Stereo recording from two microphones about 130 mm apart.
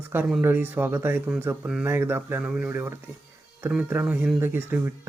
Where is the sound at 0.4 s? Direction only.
15° right (ahead or behind).